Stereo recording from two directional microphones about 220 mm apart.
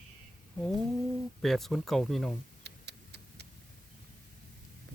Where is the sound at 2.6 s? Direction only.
50° right (ahead or behind).